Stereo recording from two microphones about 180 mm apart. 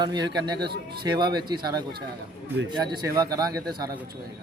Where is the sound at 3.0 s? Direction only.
20° right (ahead or behind).